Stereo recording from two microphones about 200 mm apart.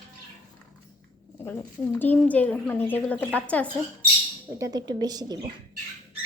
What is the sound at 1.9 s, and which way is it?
Speech, 10° left (ahead or behind).